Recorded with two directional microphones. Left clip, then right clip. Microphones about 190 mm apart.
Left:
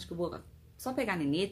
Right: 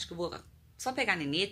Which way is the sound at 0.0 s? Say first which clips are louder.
Even; centre (ahead or behind).